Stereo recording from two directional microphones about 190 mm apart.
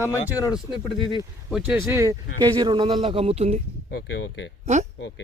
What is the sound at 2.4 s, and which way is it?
A man's voice, 25° right (ahead or behind).